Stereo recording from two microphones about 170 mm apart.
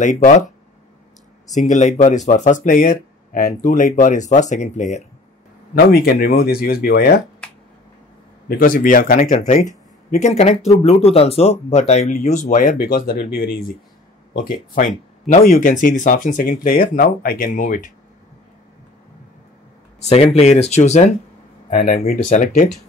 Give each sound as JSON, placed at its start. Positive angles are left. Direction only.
{"t": 0.0, "sound": "speech", "side_deg": 45}
{"t": 1.5, "sound": "speech", "side_deg": 45}
{"t": 5.9, "sound": "speech", "side_deg": 60}
{"t": 8.5, "sound": "speech", "side_deg": 55}
{"t": 11.9, "sound": "speech", "side_deg": 45}
{"t": 20.0, "sound": "speech", "side_deg": 40}
{"t": 21.7, "sound": "speech", "side_deg": 55}